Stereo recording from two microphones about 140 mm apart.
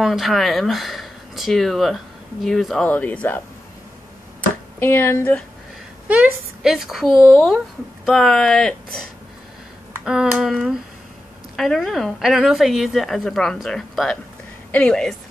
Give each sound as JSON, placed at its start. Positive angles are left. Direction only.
{"t": 0.0, "sound": "a woman's voice", "side_deg": 0}
{"t": 4.7, "sound": "speech", "side_deg": 15}
{"t": 6.0, "sound": "a woman's voice", "side_deg": -5}
{"t": 10.0, "sound": "a woman's voice", "side_deg": -5}